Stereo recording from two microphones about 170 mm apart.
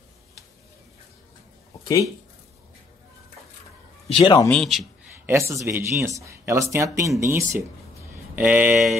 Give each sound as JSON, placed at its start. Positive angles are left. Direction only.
{"t": 4.1, "sound": "speech", "side_deg": 30}
{"t": 4.5, "sound": "a man's voice", "side_deg": 0}
{"t": 5.2, "sound": "speech", "side_deg": -15}